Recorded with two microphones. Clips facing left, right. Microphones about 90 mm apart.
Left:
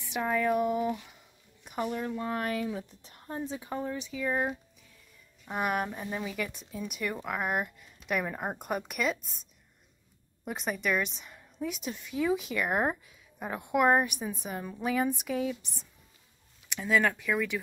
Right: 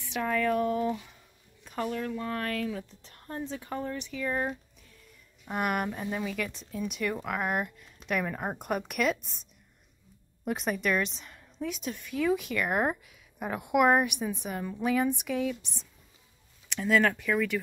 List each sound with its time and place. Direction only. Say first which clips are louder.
0.1 s speech: even; 15° left (ahead or behind)
5.4 s speech: right 1 dB; centre (ahead or behind)
10.4 s a woman's voice: right 3 dB; centre (ahead or behind)
16.6 s speech: right 2 dB; 5° left (ahead or behind)